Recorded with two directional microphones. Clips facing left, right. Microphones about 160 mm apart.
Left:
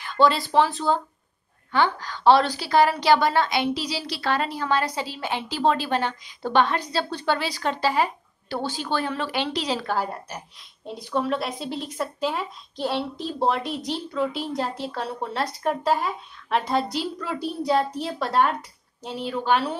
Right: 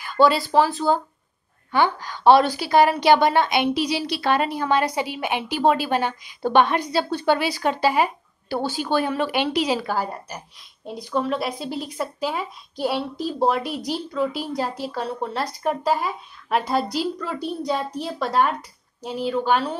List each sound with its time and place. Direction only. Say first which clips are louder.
0.0 s a woman's voice: right 2 dB; 5° right (ahead or behind)